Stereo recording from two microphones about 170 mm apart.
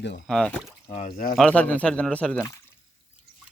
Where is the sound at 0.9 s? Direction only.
50° left (ahead or behind).